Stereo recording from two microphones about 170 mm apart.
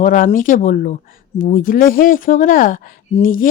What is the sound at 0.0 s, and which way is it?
Speech, 50° left (ahead or behind).